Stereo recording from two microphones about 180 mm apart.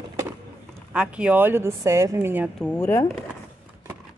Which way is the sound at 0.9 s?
5° right (ahead or behind).